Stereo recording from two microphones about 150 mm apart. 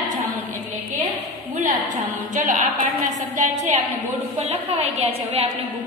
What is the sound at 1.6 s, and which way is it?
A woman's voice, 60° right (ahead or behind).